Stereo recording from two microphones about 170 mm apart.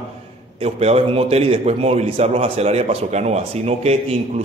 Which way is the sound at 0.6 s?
35° right (ahead or behind).